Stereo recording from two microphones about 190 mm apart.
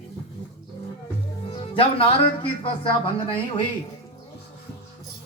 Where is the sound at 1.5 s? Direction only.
30° left (ahead or behind).